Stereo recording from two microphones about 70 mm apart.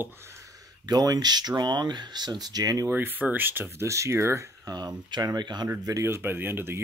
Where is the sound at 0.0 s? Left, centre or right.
Right.